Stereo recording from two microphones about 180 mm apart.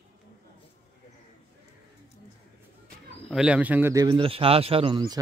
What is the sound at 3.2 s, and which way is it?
Speech, 5° right (ahead or behind).